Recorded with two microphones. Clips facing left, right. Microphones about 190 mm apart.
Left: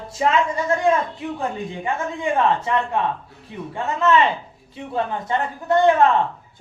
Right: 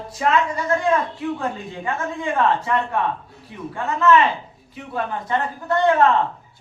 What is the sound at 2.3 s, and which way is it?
Speech, 20° left (ahead or behind).